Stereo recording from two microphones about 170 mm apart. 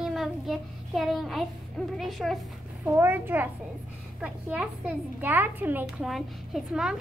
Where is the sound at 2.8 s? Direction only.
10° right (ahead or behind).